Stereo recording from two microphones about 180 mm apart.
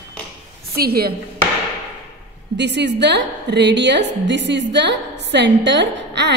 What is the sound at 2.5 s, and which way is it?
A woman's voice, 70° right (ahead or behind).